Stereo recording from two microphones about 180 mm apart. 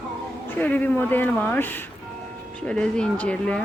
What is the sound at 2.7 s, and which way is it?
Speech, 5° left (ahead or behind).